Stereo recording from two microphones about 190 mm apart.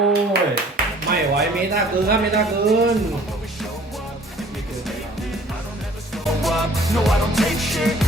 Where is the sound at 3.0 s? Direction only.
Centre (ahead or behind).